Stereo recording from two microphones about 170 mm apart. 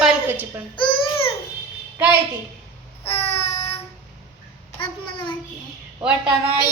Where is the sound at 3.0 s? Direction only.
35° left (ahead or behind).